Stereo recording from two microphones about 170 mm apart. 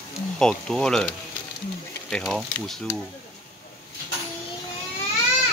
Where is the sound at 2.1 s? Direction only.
Centre (ahead or behind).